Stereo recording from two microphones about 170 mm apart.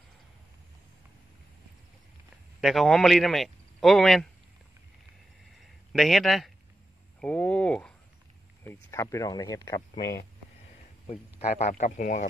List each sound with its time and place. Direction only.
2.6 s speech: centre (ahead or behind)
5.9 s speech: centre (ahead or behind)
7.2 s a sound: 10° left (ahead or behind)
8.6 s speech: 15° left (ahead or behind)
9.8 s speech: 65° left (ahead or behind)
11.1 s speech: 40° left (ahead or behind)